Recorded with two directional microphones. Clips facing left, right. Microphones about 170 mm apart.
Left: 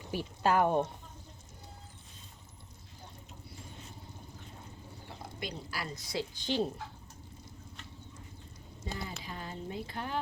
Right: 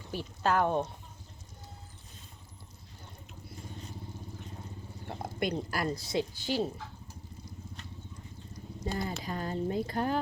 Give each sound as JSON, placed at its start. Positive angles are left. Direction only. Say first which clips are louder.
{"t": 0.1, "sound": "speech", "louder": "even", "side_deg": 10}
{"t": 5.0, "sound": "a sound", "louder": "right 9 dB", "side_deg": -55}
{"t": 5.9, "sound": "a woman's voice", "louder": "right 3 dB", "side_deg": -30}
{"t": 6.3, "sound": "speech", "louder": "right 1 dB", "side_deg": -5}
{"t": 8.8, "sound": "speech", "louder": "right 6 dB", "side_deg": -50}